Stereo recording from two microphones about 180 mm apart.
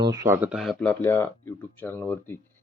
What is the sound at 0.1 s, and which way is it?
Speech, 15° right (ahead or behind).